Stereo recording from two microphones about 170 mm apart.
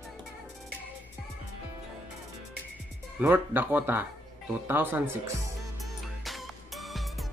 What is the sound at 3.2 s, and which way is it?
Speech, 10° right (ahead or behind).